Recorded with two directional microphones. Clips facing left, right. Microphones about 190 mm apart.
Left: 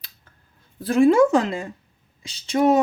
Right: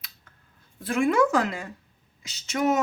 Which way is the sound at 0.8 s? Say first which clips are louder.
Left 7 dB; 35° left (ahead or behind).